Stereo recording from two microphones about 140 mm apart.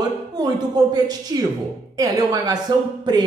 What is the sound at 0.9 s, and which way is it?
A man's voice, 30° right (ahead or behind).